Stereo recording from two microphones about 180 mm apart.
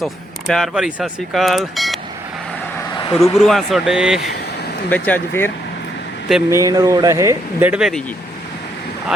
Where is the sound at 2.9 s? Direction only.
25° left (ahead or behind).